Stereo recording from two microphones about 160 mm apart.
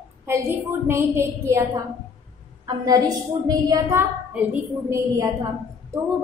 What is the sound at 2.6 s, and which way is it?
A woman's voice, 25° right (ahead or behind).